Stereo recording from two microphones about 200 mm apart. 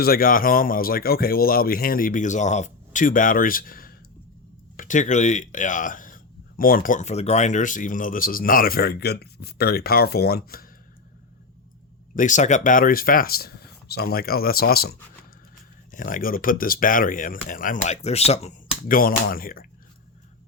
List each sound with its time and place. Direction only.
0.0 s speech: 45° left (ahead or behind)
12.1 s speech: 40° left (ahead or behind)
18.8 s speech: 45° left (ahead or behind)